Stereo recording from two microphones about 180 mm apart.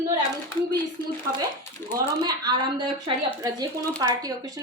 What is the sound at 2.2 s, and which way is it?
A woman's voice, 25° right (ahead or behind).